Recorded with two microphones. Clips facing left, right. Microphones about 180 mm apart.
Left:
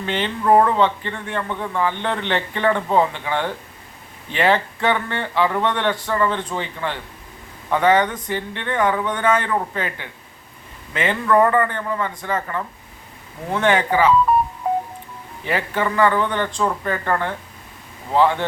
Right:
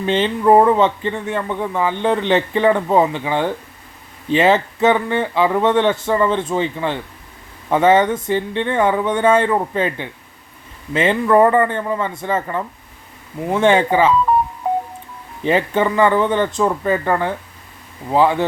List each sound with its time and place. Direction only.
0.0 s speech: 20° right (ahead or behind)
13.7 s speech: 25° right (ahead or behind)
15.4 s speech: 25° right (ahead or behind)